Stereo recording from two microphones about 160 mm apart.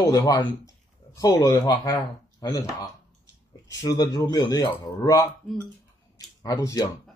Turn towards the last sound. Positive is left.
turn(degrees=20)  # may be behind; listen again after turning